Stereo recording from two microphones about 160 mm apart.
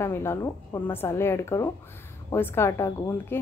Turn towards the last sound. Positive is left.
turn(degrees=15)  # may be behind; listen again after turning